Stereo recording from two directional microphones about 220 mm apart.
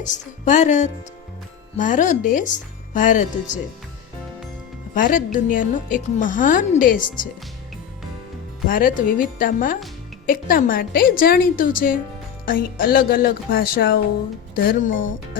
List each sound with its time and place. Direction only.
0.1 s a woman's voice: 35° left (ahead or behind)
4.9 s a woman's voice: 40° left (ahead or behind)
8.6 s a woman's voice: 40° left (ahead or behind)